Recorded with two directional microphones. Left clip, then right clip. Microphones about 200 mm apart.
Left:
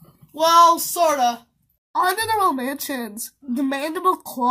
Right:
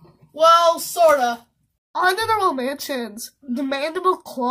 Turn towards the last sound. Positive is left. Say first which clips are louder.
# even
turn(degrees=5)  # may be behind; listen again after turning